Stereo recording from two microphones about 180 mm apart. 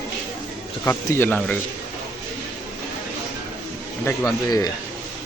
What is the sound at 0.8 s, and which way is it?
Speech, 10° left (ahead or behind).